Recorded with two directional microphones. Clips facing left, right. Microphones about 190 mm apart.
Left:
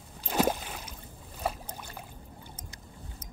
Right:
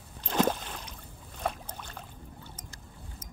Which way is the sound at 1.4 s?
5° left (ahead or behind).